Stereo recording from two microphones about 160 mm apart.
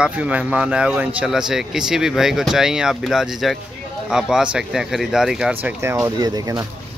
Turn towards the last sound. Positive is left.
turn(degrees=-25)  # may be behind; listen again after turning